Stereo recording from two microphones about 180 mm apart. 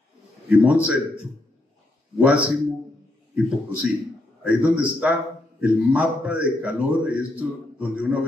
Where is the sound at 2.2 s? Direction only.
5° right (ahead or behind).